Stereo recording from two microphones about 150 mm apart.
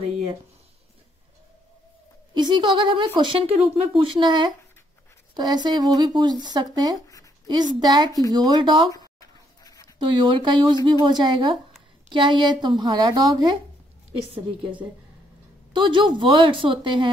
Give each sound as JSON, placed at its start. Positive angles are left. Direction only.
{"t": 2.3, "sound": "speech", "side_deg": -30}
{"t": 4.0, "sound": "speech", "side_deg": -30}
{"t": 9.6, "sound": "a sound", "side_deg": 25}
{"t": 9.9, "sound": "speech", "side_deg": -30}